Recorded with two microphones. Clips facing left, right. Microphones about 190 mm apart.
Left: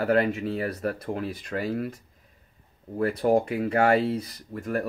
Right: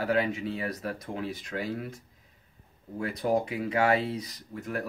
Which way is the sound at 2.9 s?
45° left (ahead or behind).